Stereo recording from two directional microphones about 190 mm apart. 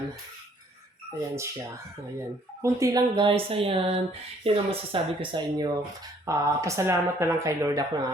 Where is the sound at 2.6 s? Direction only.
15° right (ahead or behind).